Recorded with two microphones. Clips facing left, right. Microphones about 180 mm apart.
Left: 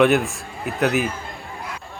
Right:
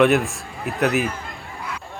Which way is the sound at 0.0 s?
Centre (ahead or behind).